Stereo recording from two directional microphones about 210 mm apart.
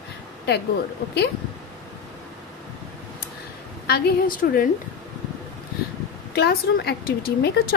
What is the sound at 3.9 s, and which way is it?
Speech, 45° left (ahead or behind).